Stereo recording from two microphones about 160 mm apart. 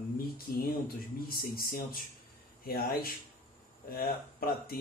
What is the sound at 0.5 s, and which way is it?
Speech, 65° left (ahead or behind).